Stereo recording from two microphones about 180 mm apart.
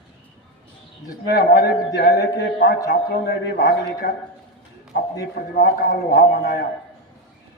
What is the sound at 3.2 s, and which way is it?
Speech, 65° left (ahead or behind).